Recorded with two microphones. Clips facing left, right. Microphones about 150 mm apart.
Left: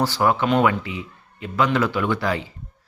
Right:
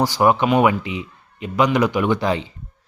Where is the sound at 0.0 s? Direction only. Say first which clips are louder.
Right 3 dB; 15° right (ahead or behind).